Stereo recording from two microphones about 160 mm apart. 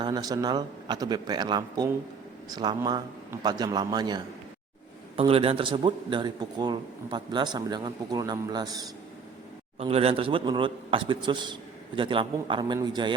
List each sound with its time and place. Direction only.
0.0 s a man's voice: 25° right (ahead or behind)
5.1 s a man's voice: 35° right (ahead or behind)
9.7 s a man's voice: 40° right (ahead or behind)